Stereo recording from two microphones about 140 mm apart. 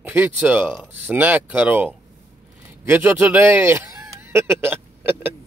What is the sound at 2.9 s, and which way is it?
Speech, 15° right (ahead or behind).